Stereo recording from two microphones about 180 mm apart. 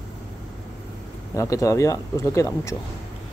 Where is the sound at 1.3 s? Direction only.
15° left (ahead or behind).